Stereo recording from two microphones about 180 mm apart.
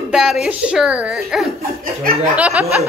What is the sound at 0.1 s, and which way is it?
Speech, centre (ahead or behind).